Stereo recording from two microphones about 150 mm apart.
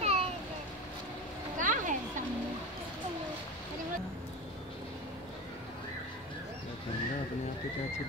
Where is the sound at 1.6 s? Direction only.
60° right (ahead or behind).